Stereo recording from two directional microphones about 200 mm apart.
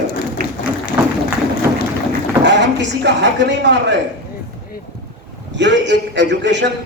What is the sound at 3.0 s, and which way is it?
Speech, 60° right (ahead or behind).